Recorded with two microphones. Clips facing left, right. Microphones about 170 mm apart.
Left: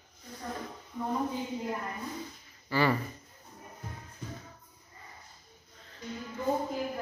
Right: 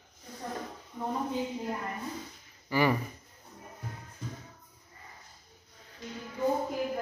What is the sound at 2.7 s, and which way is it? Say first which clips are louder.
Speech: right 1 dB; 15° right (ahead or behind).